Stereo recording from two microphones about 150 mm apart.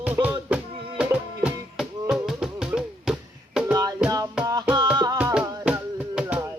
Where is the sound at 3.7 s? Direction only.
25° right (ahead or behind).